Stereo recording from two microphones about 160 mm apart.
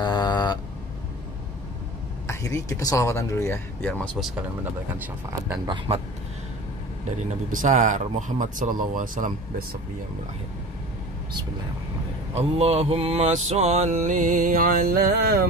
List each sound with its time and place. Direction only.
0.0 s a sound: 25° left (ahead or behind)
2.2 s speech: 20° left (ahead or behind)
4.9 s speech: 15° right (ahead or behind)
7.1 s mantra: 50° right (ahead or behind)
12.4 s mantra: 40° right (ahead or behind); by 15.4 s 70° right (ahead or behind)